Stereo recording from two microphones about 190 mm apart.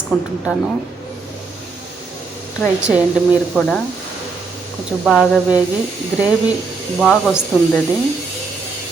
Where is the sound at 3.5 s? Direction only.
5° left (ahead or behind).